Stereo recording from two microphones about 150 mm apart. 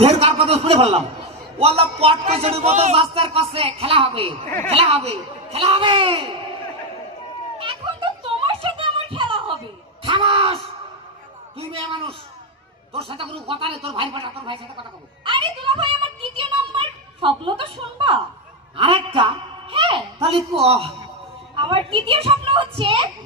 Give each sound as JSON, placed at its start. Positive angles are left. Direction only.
{"t": 0.0, "sound": "a man's voice", "side_deg": -40}
{"t": 4.4, "sound": "a woman's voice", "side_deg": 15}
{"t": 4.7, "sound": "a man's voice", "side_deg": -40}
{"t": 7.6, "sound": "music", "side_deg": -35}
{"t": 10.1, "sound": "a man's voice", "side_deg": -30}
{"t": 11.7, "sound": "a man's voice", "side_deg": -35}